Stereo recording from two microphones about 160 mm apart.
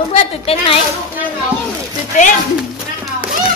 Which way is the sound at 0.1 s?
40° left (ahead or behind).